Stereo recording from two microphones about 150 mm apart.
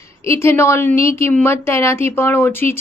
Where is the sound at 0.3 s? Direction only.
15° left (ahead or behind).